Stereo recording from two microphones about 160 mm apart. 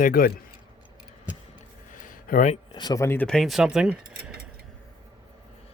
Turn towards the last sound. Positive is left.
turn(degrees=-5)  # may be behind; listen again after turning